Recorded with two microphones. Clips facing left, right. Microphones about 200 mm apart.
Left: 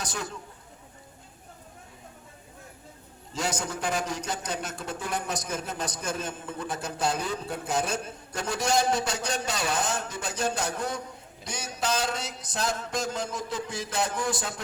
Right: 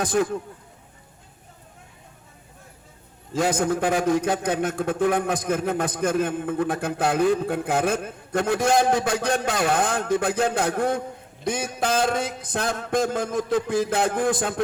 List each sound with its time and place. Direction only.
0.0 s a man's voice: 55° right (ahead or behind)
3.3 s a man's voice: 55° right (ahead or behind)
11.4 s a sound: 55° right (ahead or behind)